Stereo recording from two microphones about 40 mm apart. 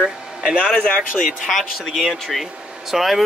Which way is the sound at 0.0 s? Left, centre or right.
Centre.